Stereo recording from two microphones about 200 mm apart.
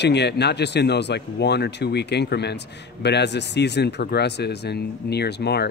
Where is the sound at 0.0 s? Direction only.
55° left (ahead or behind).